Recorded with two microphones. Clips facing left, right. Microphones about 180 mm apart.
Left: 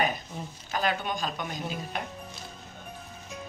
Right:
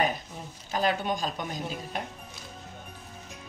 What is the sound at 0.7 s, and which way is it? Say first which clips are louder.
Speech: right 2 dB; 35° right (ahead or behind).